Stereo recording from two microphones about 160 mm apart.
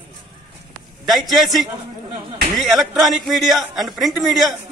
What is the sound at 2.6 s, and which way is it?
A man's voice, centre (ahead or behind).